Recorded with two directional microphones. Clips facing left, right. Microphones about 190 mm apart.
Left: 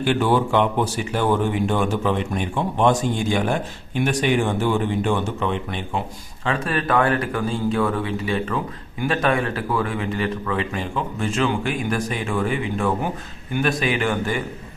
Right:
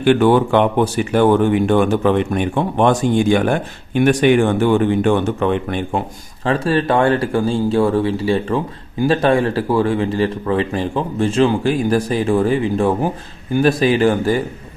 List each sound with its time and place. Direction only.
0.0 s speech: 60° right (ahead or behind)
6.4 s speech: 35° right (ahead or behind)